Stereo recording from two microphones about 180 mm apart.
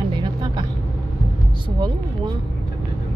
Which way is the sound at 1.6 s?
25° right (ahead or behind).